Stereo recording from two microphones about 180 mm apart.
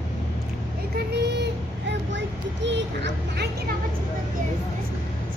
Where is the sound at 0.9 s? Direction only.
70° right (ahead or behind).